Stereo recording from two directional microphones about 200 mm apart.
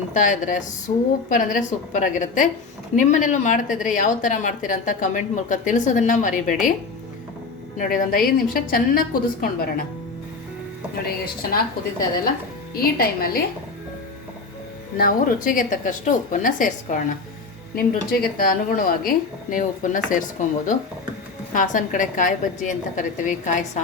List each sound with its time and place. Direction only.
0.1 s a woman's voice: 40° left (ahead or behind)
0.9 s a woman's voice: 25° left (ahead or behind)
1.3 s a woman's voice: 40° left (ahead or behind)
7.8 s a woman's voice: 45° left (ahead or behind)
12.7 s a woman's voice: 50° left (ahead or behind)
14.9 s a woman's voice: 45° left (ahead or behind)